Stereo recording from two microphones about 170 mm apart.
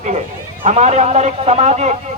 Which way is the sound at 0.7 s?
40° right (ahead or behind).